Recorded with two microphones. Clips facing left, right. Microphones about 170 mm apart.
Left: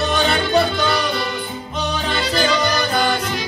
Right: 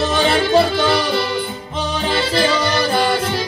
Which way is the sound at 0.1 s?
30° right (ahead or behind).